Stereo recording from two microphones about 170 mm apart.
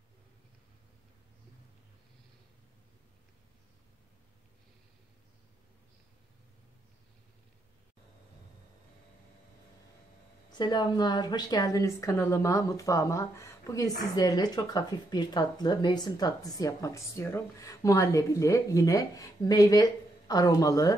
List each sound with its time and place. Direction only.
10.6 s a woman's voice: 25° left (ahead or behind)